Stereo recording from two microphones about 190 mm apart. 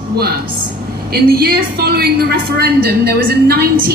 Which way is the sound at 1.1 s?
55° right (ahead or behind).